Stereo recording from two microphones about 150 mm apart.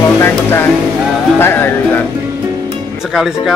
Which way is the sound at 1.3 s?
15° left (ahead or behind).